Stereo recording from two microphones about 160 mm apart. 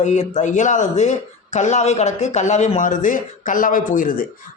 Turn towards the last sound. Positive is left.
turn(degrees=60)  # may be behind; listen again after turning